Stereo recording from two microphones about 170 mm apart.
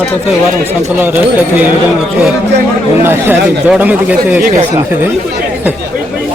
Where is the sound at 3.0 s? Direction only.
15° right (ahead or behind).